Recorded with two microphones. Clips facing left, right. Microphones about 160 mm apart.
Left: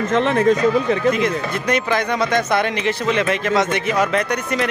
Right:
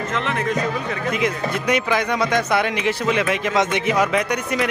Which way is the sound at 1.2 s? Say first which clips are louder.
Left 1 dB; 10° right (ahead or behind).